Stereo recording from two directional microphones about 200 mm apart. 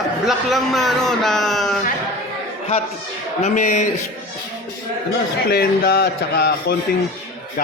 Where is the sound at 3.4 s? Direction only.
35° left (ahead or behind).